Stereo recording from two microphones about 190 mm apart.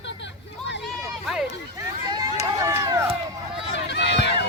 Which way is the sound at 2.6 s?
15° right (ahead or behind).